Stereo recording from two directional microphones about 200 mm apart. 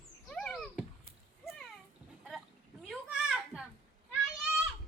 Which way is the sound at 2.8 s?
Centre (ahead or behind).